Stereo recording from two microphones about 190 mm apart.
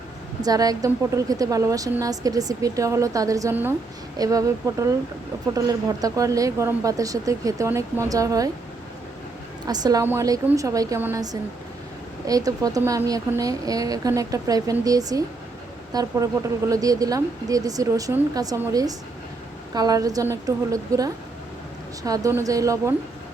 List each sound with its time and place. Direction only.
0.4 s a woman's voice: 20° right (ahead or behind)
9.6 s a woman's voice: 20° right (ahead or behind)